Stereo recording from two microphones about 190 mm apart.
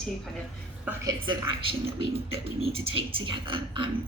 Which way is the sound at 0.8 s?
15° right (ahead or behind).